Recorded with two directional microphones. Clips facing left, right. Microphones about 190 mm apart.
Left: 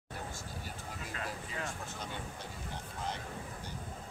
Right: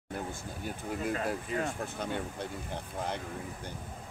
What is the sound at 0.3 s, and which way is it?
Speech, 55° right (ahead or behind).